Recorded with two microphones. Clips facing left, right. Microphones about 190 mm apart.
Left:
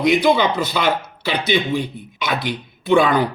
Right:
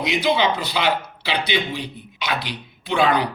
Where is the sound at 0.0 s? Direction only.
50° left (ahead or behind).